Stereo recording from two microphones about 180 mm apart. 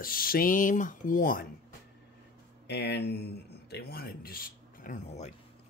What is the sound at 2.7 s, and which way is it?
Speech, 65° left (ahead or behind).